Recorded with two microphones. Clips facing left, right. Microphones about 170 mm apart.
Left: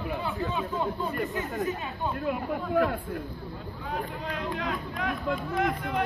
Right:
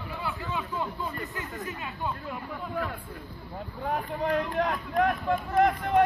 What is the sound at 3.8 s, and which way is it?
Speech, 55° right (ahead or behind).